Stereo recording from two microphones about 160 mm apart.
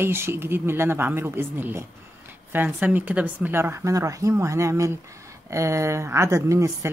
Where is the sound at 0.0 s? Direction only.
15° right (ahead or behind).